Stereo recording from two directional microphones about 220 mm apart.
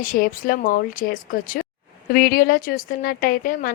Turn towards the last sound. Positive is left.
turn(degrees=40)  # may be behind; listen again after turning